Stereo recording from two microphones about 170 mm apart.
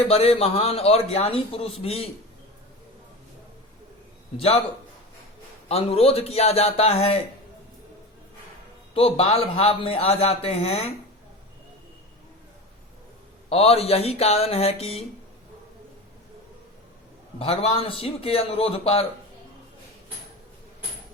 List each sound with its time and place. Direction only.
0.0 s a man's voice: 35° left (ahead or behind)
4.4 s a man's voice: 35° left (ahead or behind)
5.6 s a man's voice: 35° left (ahead or behind)
9.0 s a man's voice: 35° left (ahead or behind)
13.5 s a man's voice: 35° left (ahead or behind)
17.4 s a man's voice: 35° left (ahead or behind)